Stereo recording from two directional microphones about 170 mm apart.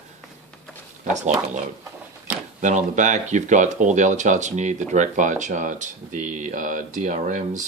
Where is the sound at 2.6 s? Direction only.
45° right (ahead or behind).